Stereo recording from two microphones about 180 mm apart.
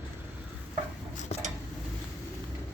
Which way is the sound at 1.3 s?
35° left (ahead or behind).